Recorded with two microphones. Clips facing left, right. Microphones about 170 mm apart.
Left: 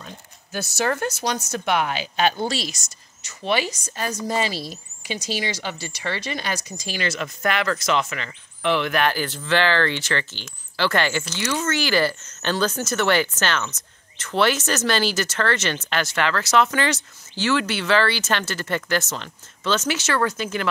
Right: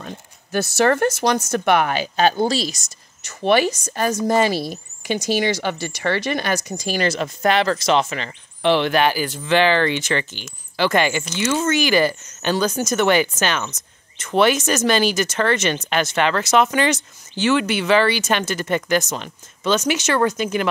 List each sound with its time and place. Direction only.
0.0 s speech: 60° right (ahead or behind); by 2.8 s 35° right (ahead or behind)
3.3 s speech: 55° right (ahead or behind)
6.7 s speech: 40° right (ahead or behind)
9.0 s speech: 10° right (ahead or behind)